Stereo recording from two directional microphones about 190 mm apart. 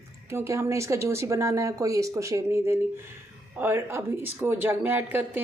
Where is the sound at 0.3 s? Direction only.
15° right (ahead or behind).